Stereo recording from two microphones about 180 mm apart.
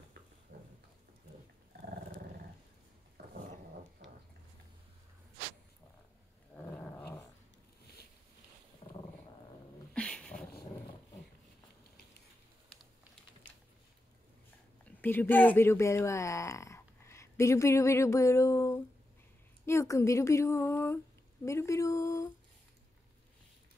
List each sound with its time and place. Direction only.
0.5 s a sound: 65° right (ahead or behind)
3.2 s dog: 65° right (ahead or behind)
6.5 s roaring cats: 15° left (ahead or behind)
8.8 s dog: 35° left (ahead or behind)
9.9 s dog: 5° left (ahead or behind)
15.0 s speech: 10° left (ahead or behind)
21.5 s a sound: 15° left (ahead or behind)